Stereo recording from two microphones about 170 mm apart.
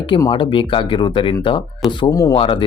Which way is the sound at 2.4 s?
30° left (ahead or behind).